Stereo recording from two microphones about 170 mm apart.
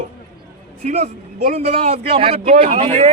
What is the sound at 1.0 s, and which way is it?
Speech, 60° right (ahead or behind).